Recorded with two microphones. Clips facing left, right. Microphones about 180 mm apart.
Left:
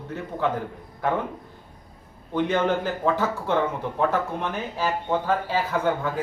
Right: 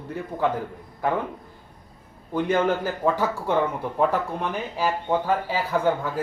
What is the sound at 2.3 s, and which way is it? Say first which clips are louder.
Speech: right 1 dB; 10° right (ahead or behind).